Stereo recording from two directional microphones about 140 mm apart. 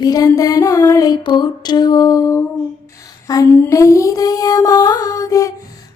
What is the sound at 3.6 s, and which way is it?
Music, 20° left (ahead or behind).